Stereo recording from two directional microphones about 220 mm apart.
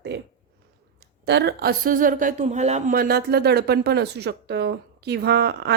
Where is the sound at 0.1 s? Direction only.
50° right (ahead or behind).